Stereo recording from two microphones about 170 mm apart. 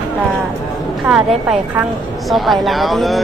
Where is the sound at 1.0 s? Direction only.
5° right (ahead or behind).